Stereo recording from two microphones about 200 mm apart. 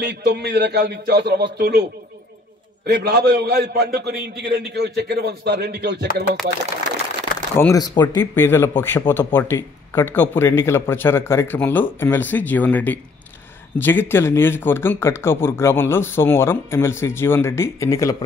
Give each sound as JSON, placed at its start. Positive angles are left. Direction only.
{"t": 0.0, "sound": "a man's voice", "side_deg": -55}
{"t": 7.5, "sound": "speech", "side_deg": 15}